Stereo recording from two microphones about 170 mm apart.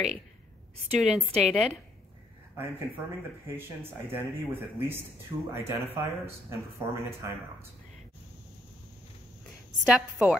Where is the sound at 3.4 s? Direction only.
15° right (ahead or behind).